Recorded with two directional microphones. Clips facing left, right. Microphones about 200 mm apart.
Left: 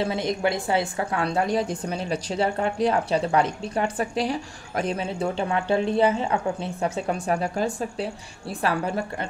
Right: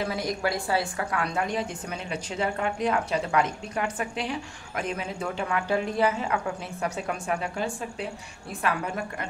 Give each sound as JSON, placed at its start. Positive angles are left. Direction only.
{"t": 0.0, "sound": "a woman's voice", "side_deg": 25}